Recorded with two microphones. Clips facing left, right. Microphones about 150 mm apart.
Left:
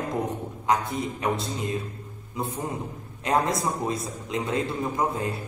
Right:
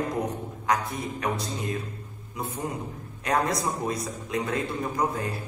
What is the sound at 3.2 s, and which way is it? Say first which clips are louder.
A man's voice: left 2 dB; 25° left (ahead or behind).